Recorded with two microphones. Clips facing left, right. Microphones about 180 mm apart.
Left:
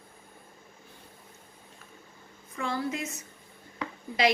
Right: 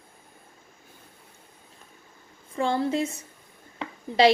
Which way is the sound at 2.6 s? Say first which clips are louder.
Right 7 dB; 30° right (ahead or behind).